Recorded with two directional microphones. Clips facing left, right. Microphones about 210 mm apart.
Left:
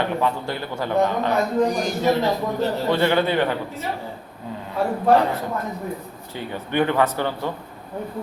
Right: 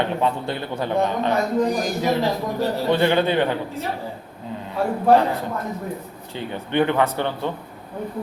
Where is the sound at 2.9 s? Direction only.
20° right (ahead or behind).